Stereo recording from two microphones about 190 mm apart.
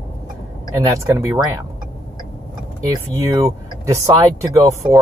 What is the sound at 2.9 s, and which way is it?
Speech, 20° right (ahead or behind).